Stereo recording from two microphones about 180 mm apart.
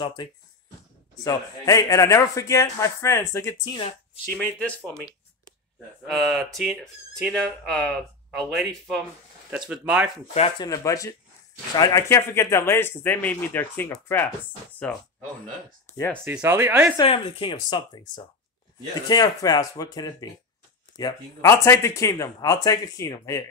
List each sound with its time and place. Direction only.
0.0 s a man's voice: 25° left (ahead or behind)
6.0 s speech: centre (ahead or behind)
10.6 s a man's voice: 20° left (ahead or behind)
16.3 s speech: 15° right (ahead or behind)
17.0 s a man's voice: 30° left (ahead or behind)